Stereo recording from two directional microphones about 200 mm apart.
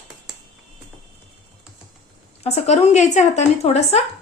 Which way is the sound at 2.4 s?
35° left (ahead or behind).